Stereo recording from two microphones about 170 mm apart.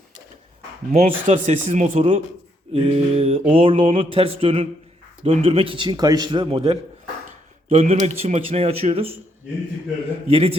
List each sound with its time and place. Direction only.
0.9 s speech: 40° right (ahead or behind)
10.2 s speech: 35° right (ahead or behind)